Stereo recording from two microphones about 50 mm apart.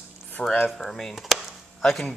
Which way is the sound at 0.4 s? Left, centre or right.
Centre.